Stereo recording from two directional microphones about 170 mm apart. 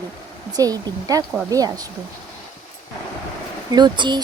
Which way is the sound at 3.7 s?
25° right (ahead or behind).